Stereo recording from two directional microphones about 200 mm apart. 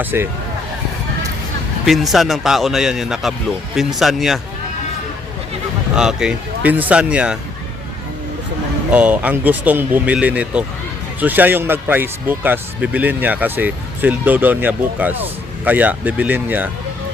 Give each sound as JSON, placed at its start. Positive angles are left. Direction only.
{"t": 0.0, "sound": "speech", "side_deg": -10}
{"t": 1.8, "sound": "speech", "side_deg": 0}
{"t": 6.0, "sound": "speech", "side_deg": -5}
{"t": 8.9, "sound": "speech", "side_deg": -5}